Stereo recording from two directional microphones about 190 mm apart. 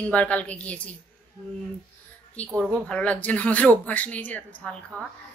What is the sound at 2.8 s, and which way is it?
A woman's voice, 5° left (ahead or behind).